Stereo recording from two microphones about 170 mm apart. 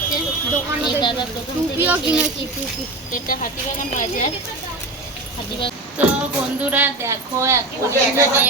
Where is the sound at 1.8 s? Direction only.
10° right (ahead or behind).